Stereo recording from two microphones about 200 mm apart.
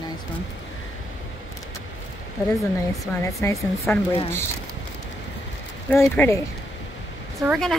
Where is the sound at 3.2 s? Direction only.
15° left (ahead or behind).